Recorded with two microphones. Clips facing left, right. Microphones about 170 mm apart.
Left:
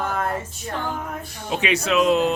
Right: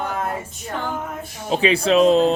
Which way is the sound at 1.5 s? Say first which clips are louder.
Right 5 dB; 30° right (ahead or behind).